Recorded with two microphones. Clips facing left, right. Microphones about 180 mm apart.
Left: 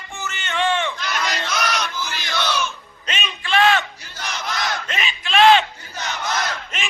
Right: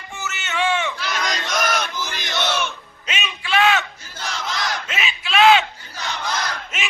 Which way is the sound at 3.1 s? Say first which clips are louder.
Even; 10° right (ahead or behind).